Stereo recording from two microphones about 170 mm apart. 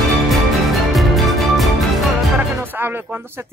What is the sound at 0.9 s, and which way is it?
Music, centre (ahead or behind).